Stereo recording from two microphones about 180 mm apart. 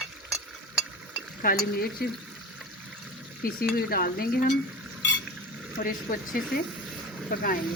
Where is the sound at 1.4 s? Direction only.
55° left (ahead or behind).